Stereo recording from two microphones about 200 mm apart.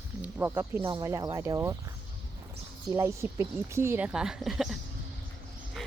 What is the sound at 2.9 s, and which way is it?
Speech, 15° right (ahead or behind).